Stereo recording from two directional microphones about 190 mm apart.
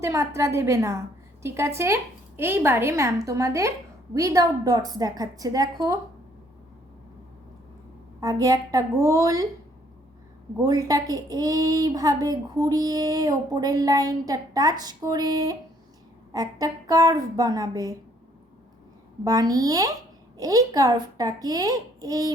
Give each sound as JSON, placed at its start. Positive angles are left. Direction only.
{"t": 0.0, "sound": "a woman's voice", "side_deg": -15}
{"t": 8.2, "sound": "speech", "side_deg": -20}
{"t": 10.6, "sound": "speech", "side_deg": -20}
{"t": 19.2, "sound": "speech", "side_deg": -20}